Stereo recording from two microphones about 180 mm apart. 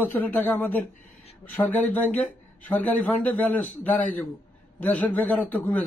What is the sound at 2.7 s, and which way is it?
Speech, 10° left (ahead or behind).